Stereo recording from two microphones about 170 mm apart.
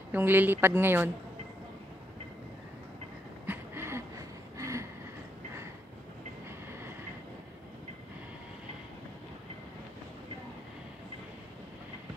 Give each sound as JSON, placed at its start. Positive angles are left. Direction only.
{"t": 0.1, "sound": "a woman's voice", "side_deg": -10}
{"t": 3.4, "sound": "a sound", "side_deg": -15}
{"t": 4.6, "sound": "vehicle", "side_deg": -15}